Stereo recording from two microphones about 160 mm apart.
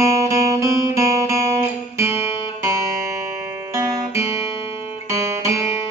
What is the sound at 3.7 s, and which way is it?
Guitar, 20° right (ahead or behind).